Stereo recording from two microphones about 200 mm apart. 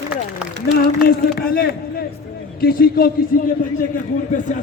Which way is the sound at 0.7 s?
50° left (ahead or behind).